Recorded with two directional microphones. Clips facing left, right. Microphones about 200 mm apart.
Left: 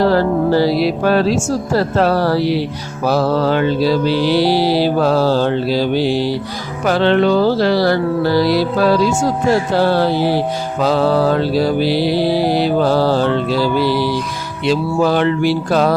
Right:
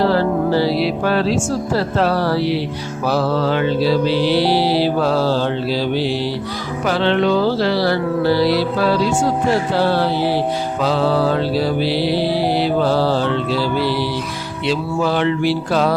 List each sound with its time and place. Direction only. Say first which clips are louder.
0.0 s music: left 2 dB; 45° left (ahead or behind)
10.2 s music: left 2 dB; 15° left (ahead or behind)
10.8 s music: left 4 dB; 45° left (ahead or behind)